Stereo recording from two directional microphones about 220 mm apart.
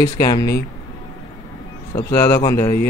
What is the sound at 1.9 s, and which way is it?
Speech, 10° left (ahead or behind).